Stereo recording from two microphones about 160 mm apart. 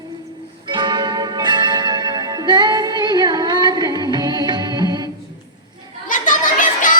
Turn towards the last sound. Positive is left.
turn(degrees=55)  # may be behind; listen again after turning